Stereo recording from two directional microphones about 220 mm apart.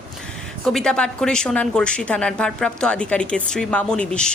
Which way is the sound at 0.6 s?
5° left (ahead or behind).